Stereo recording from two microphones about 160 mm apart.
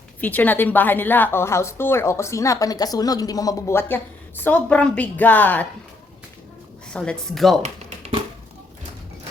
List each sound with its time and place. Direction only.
0.2 s a woman's voice: 10° left (ahead or behind)
6.9 s a woman's voice: 5° left (ahead or behind)
7.6 s tap: 45° right (ahead or behind)